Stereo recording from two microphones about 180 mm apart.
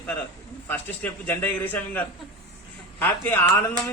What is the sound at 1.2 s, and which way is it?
Speech, 10° left (ahead or behind).